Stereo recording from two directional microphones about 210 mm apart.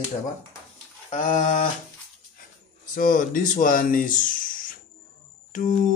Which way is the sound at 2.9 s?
40° left (ahead or behind).